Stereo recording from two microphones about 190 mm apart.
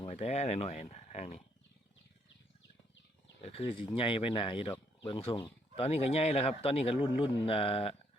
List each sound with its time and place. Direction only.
0.0 s speech: 35° left (ahead or behind)
3.4 s speech: 30° left (ahead or behind)